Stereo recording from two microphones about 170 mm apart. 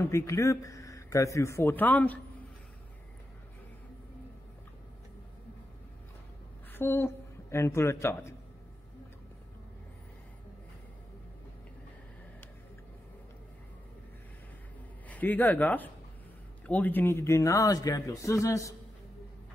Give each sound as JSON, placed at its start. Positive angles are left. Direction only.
{"t": 0.0, "sound": "a man's voice", "side_deg": 15}
{"t": 6.7, "sound": "a woman's voice", "side_deg": 15}
{"t": 15.0, "sound": "a man's voice", "side_deg": 10}